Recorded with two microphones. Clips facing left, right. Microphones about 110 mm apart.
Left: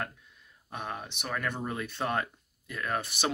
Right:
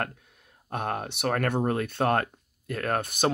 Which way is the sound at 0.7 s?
60° right (ahead or behind).